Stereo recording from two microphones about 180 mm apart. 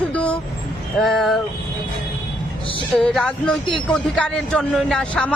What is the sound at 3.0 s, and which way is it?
A man's voice, centre (ahead or behind).